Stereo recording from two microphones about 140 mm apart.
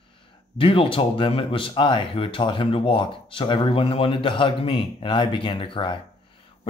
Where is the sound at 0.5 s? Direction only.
40° left (ahead or behind).